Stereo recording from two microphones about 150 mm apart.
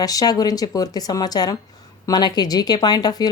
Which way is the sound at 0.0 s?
25° left (ahead or behind).